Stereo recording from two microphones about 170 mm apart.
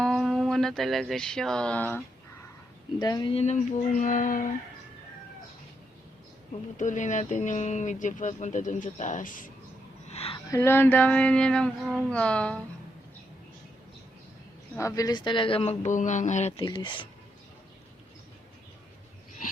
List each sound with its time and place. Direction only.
0.0 s a sound: centre (ahead or behind)
3.0 s speech: 25° left (ahead or behind); by 4.4 s 50° left (ahead or behind)
6.7 s speech: 45° left (ahead or behind)
10.1 s a sound: 35° left (ahead or behind)
10.3 s speech: 15° left (ahead or behind)
14.8 s speech: 20° left (ahead or behind); by 16.6 s 40° left (ahead or behind)
16.6 s speech: 30° left (ahead or behind)